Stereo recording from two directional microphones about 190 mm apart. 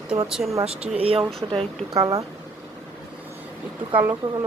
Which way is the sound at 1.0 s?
30° right (ahead or behind).